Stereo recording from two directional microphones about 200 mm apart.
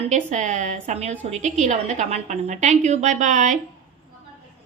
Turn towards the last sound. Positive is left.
turn(degrees=-40)  # may be behind; listen again after turning